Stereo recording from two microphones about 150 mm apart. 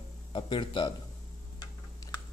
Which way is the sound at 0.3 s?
35° left (ahead or behind).